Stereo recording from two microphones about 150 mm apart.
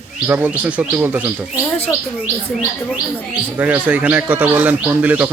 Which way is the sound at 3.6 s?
10° right (ahead or behind).